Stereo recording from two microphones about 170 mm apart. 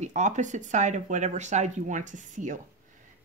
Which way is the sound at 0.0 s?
45° right (ahead or behind).